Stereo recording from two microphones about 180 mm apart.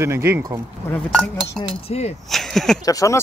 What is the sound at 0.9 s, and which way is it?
Speech, 5° left (ahead or behind).